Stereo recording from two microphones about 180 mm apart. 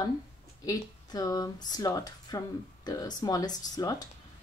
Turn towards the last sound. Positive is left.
turn(degrees=20)  # may be behind; listen again after turning